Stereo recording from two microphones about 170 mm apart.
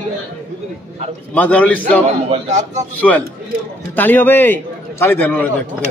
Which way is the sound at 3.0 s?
10° left (ahead or behind).